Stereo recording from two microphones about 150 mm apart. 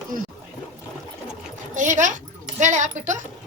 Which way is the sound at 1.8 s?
55° right (ahead or behind).